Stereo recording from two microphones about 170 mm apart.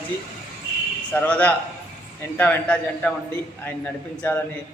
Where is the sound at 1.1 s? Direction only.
10° left (ahead or behind).